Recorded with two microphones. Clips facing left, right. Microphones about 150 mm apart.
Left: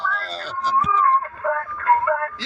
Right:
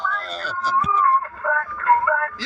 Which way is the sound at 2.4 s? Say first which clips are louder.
Right 1 dB; 25° left (ahead or behind).